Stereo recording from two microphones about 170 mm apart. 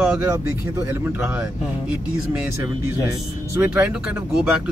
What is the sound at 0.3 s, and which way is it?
Speech, 15° right (ahead or behind).